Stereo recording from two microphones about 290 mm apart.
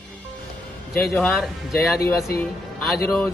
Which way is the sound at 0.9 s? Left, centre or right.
Centre.